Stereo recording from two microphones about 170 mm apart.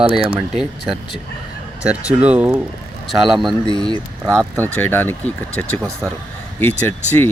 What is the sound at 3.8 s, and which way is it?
Speech, 25° right (ahead or behind).